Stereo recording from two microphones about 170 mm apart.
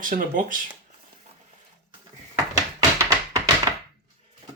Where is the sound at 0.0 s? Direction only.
55° right (ahead or behind).